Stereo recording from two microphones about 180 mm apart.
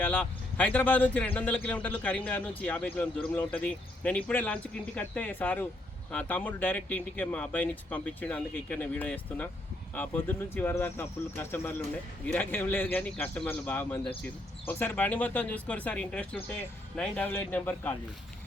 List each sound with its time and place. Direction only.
0.0 s speech: 10° left (ahead or behind)